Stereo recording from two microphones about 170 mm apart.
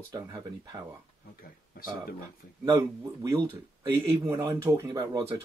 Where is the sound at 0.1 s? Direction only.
20° right (ahead or behind).